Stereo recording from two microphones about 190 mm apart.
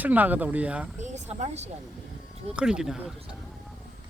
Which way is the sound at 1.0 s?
35° right (ahead or behind).